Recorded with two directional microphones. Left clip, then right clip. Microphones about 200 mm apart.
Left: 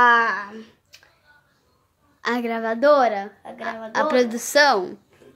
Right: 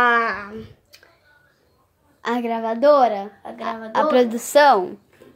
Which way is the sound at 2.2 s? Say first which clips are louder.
Right 1 dB; 5° left (ahead or behind).